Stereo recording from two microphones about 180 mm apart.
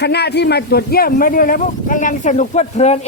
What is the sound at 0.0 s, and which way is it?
Speech, 65° left (ahead or behind).